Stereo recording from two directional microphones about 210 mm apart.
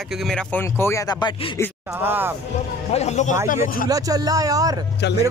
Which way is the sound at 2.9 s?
30° left (ahead or behind).